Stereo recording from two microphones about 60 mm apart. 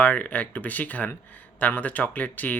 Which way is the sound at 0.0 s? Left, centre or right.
Left.